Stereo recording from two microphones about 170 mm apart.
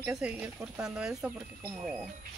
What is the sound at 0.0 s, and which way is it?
Speech, 5° right (ahead or behind).